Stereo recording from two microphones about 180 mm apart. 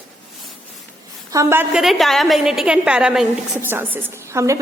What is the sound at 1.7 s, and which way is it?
A woman's voice, centre (ahead or behind).